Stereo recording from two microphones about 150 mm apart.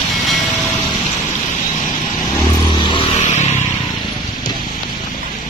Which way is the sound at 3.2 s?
50° left (ahead or behind).